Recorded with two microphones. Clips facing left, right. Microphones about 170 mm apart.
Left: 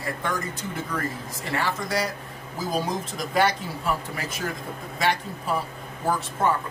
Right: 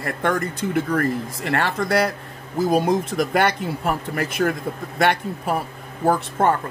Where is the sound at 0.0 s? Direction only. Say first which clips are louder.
Right 6 dB; 60° right (ahead or behind).